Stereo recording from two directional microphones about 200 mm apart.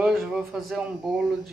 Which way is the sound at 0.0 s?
Centre (ahead or behind).